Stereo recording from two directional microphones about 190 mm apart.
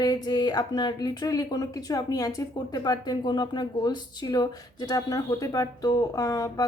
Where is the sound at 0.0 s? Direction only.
20° left (ahead or behind).